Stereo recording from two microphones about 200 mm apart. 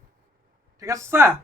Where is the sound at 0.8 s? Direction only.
15° right (ahead or behind).